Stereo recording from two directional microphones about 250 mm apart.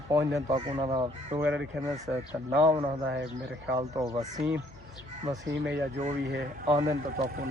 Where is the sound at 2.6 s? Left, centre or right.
Centre.